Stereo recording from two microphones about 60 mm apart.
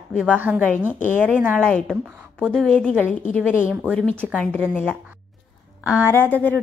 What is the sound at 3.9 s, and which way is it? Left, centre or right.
Speech, centre.